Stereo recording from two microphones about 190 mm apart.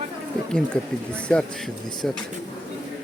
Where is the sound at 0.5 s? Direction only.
5° left (ahead or behind).